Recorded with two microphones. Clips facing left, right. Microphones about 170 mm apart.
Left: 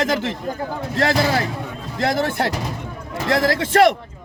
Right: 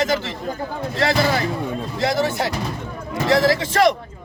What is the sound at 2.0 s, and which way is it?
A man's voice, 55° left (ahead or behind).